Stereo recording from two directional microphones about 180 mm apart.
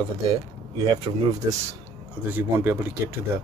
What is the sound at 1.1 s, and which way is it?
Speech, 20° right (ahead or behind).